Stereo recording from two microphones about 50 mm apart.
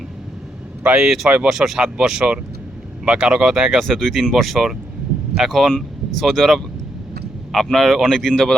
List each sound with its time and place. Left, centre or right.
0.9 s speech: centre
3.8 s speech: centre